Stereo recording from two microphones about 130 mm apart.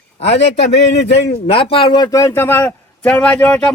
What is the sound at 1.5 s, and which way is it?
A man's voice, 45° left (ahead or behind).